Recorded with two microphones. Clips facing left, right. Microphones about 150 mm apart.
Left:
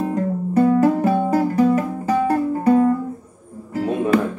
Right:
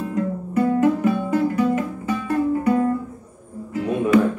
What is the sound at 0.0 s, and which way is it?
Music, 40° left (ahead or behind).